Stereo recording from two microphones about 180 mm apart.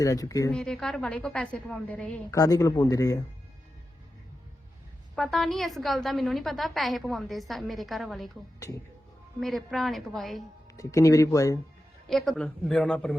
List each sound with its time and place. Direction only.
0.0 s speech: 20° left (ahead or behind)
0.5 s a woman's voice: 5° left (ahead or behind)
2.3 s speech: 20° left (ahead or behind)
5.1 s a woman's voice: centre (ahead or behind)
8.5 s speech: 20° left (ahead or behind)
9.4 s a woman's voice: centre (ahead or behind)
10.8 s speech: 20° left (ahead or behind)
12.0 s a woman's voice: centre (ahead or behind)